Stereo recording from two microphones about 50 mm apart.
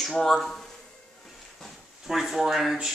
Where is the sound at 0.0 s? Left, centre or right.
Centre.